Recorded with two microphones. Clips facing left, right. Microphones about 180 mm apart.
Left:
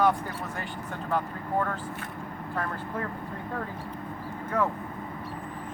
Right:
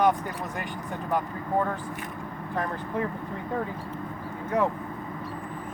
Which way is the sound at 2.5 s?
15° right (ahead or behind).